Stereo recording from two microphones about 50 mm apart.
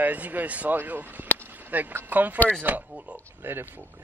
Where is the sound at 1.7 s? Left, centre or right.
Right.